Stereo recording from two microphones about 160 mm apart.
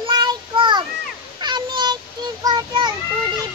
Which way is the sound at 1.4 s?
25° right (ahead or behind).